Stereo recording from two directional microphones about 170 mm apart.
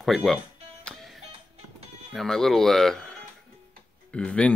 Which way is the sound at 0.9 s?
5° left (ahead or behind).